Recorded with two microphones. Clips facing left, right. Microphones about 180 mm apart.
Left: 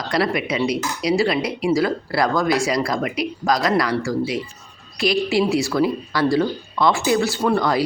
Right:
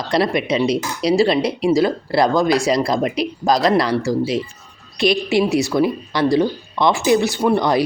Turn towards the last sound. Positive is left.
turn(degrees=-20)  # may be behind; listen again after turning